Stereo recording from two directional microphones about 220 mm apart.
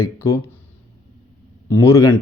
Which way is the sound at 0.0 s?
15° left (ahead or behind).